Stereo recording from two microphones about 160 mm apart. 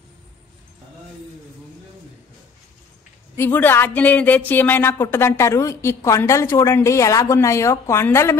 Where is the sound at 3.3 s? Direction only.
15° left (ahead or behind).